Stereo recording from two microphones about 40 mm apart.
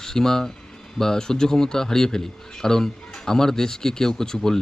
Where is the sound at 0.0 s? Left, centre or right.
Centre.